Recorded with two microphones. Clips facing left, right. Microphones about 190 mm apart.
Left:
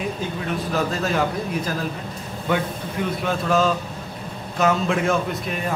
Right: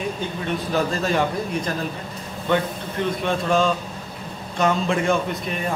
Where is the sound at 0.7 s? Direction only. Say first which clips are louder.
Right 1 dB; centre (ahead or behind).